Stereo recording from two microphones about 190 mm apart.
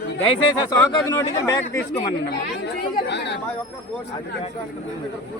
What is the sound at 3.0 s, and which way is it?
Speech, 65° left (ahead or behind).